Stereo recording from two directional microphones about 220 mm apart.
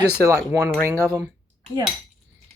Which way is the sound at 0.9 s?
10° right (ahead or behind).